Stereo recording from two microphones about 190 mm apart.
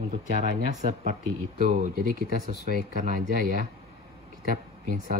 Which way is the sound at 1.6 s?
45° right (ahead or behind).